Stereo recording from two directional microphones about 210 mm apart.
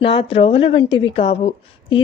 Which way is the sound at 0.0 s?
25° left (ahead or behind).